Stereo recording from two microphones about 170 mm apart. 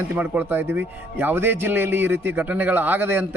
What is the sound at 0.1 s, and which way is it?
A man's voice, 10° right (ahead or behind).